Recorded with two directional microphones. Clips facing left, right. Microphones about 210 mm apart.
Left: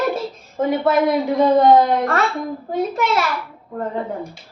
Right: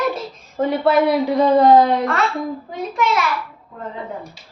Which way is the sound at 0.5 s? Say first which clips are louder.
Right 1 dB; centre (ahead or behind).